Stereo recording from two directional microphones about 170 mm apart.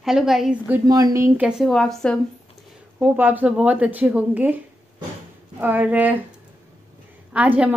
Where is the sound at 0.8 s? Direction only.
20° right (ahead or behind); by 2.1 s centre (ahead or behind).